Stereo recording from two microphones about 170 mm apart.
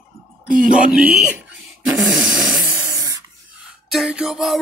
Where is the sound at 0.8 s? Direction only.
5° right (ahead or behind).